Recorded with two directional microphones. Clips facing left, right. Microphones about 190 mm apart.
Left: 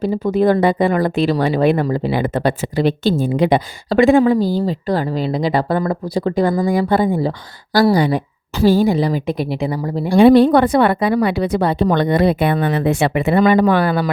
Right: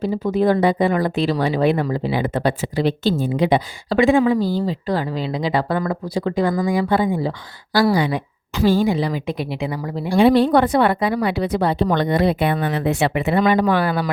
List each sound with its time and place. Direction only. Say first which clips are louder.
0.0 s speech: left 3 dB; 50° left (ahead or behind)
4.4 s speech: left 3 dB; 15° left (ahead or behind)
4.6 s speech: left 3 dB; 45° left (ahead or behind)
10.2 s speech: left 4 dB; 55° left (ahead or behind)